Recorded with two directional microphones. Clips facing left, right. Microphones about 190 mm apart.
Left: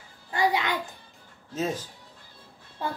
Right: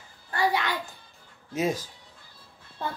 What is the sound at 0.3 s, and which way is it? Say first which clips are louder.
Speech: left 1 dB; 20° left (ahead or behind).